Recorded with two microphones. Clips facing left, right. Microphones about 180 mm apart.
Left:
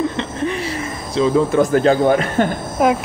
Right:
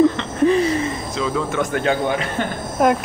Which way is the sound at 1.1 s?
35° left (ahead or behind).